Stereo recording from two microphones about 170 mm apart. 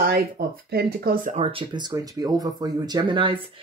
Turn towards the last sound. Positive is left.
turn(degrees=-30)  # may be behind; listen again after turning